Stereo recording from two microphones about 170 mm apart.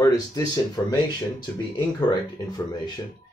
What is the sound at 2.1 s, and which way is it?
Speech, 25° left (ahead or behind).